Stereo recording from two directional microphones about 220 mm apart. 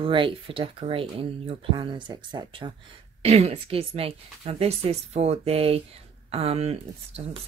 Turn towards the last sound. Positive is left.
turn(degrees=-25)  # may be behind; listen again after turning